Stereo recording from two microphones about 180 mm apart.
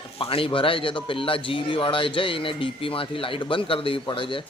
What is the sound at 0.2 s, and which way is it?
Speech, 30° left (ahead or behind).